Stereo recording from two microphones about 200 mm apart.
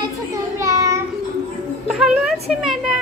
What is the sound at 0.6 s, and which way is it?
Child singing, 15° right (ahead or behind).